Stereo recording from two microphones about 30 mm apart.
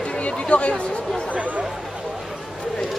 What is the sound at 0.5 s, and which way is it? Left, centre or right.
Speech, left.